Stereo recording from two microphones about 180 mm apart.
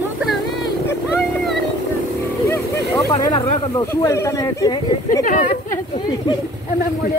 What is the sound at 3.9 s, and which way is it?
Speech, 15° left (ahead or behind).